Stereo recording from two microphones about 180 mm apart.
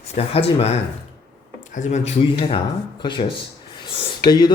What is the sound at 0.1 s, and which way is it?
Speech, 35° left (ahead or behind).